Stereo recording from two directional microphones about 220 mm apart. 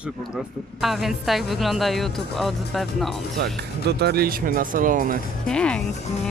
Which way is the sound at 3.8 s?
50° right (ahead or behind).